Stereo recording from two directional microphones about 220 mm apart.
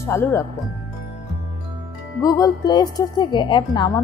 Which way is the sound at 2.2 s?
15° left (ahead or behind).